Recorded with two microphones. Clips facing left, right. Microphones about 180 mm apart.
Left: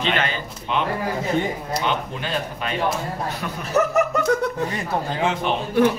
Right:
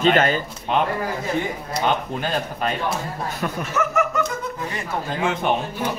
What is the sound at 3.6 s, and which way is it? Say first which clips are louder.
Speech: left 5 dB; 40° left (ahead or behind).